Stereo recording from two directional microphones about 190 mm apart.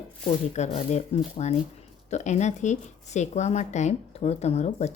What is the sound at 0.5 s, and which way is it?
A woman's voice, 35° left (ahead or behind).